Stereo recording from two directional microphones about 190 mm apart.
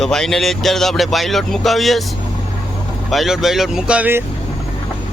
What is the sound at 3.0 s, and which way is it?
Speech, centre (ahead or behind).